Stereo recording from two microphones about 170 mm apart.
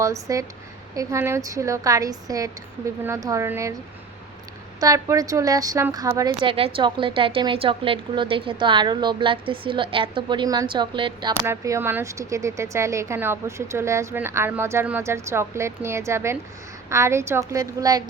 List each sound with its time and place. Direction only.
0.0 s a woman's voice: 20° right (ahead or behind)
4.8 s a woman's voice: 20° right (ahead or behind)
11.4 s speech: 15° right (ahead or behind)